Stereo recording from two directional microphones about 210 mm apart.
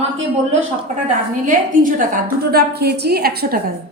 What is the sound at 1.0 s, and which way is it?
A woman's voice, 40° right (ahead or behind).